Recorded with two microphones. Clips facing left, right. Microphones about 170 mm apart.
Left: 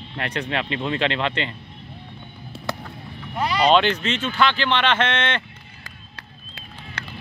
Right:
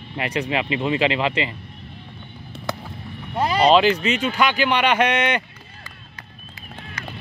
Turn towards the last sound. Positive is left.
turn(degrees=70)  # may be behind; listen again after turning